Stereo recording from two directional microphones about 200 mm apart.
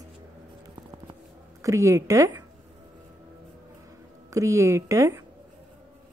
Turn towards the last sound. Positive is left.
turn(degrees=-15)  # may be behind; listen again after turning